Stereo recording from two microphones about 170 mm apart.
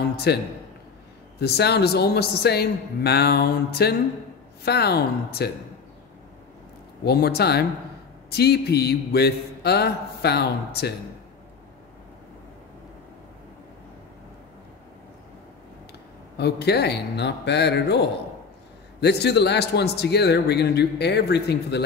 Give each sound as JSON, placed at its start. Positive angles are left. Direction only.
{"t": 0.1, "sound": "a sound", "side_deg": 75}
{"t": 1.4, "sound": "a man's voice", "side_deg": 75}
{"t": 7.1, "sound": "a man's voice", "side_deg": 70}
{"t": 16.3, "sound": "a man's voice", "side_deg": 75}